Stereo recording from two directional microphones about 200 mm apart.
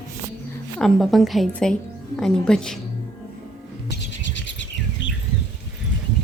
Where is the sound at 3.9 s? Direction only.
65° left (ahead or behind).